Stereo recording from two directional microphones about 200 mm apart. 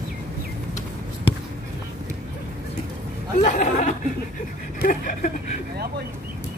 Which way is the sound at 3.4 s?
40° left (ahead or behind).